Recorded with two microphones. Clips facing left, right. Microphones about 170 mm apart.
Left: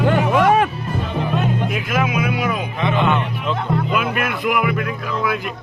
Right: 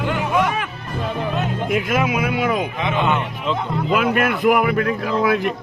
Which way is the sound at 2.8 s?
15° right (ahead or behind).